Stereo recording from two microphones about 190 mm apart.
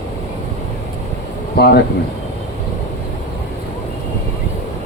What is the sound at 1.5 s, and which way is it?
Speech, 60° left (ahead or behind).